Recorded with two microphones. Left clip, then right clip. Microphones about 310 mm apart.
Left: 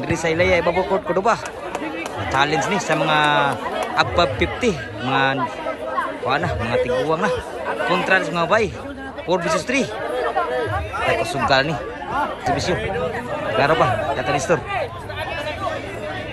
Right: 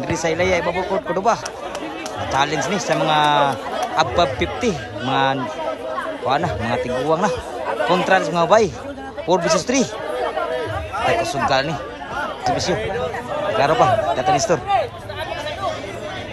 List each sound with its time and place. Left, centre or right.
0.1 s speech: centre
11.0 s speech: right
11.4 s speech: centre
12.7 s speech: right
13.6 s speech: centre